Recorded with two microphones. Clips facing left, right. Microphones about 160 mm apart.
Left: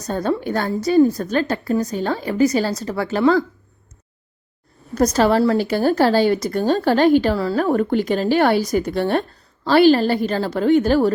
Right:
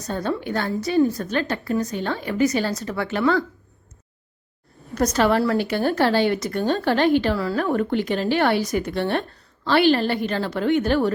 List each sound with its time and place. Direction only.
0.0 s speech: 40° left (ahead or behind)
4.9 s speech: 35° left (ahead or behind)